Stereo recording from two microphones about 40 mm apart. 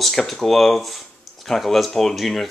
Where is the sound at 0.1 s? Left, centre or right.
Centre.